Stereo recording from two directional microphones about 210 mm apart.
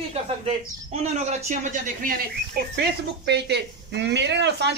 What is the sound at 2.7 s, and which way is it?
Speech, 55° right (ahead or behind).